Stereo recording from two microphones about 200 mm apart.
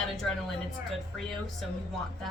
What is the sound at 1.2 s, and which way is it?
Speech, centre (ahead or behind).